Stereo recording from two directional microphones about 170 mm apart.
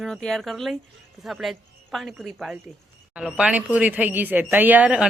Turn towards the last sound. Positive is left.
turn(degrees=-5)  # may be behind; listen again after turning